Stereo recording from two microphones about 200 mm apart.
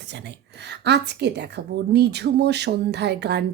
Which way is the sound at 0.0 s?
60° right (ahead or behind).